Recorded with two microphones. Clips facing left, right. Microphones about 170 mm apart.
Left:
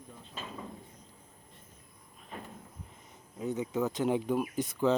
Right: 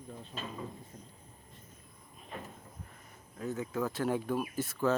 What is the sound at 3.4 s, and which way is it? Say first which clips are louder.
Speech: left 3 dB; 20° left (ahead or behind).